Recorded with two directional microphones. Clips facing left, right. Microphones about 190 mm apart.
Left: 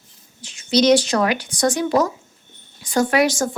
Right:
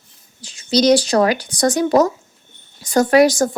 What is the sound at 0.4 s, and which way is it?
A woman's voice, 35° right (ahead or behind).